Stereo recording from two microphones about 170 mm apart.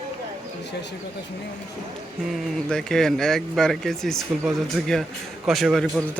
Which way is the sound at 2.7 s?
5° left (ahead or behind).